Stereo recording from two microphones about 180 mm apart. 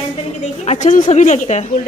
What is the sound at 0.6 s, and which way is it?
Speech, 40° left (ahead or behind).